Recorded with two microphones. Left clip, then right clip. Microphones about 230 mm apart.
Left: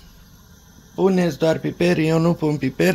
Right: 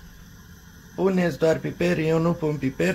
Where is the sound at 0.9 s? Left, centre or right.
Left.